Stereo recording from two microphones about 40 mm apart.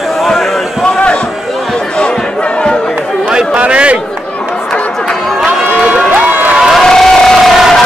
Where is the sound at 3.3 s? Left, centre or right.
Right.